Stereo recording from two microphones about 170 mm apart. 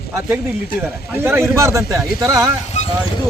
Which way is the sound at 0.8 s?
15° right (ahead or behind).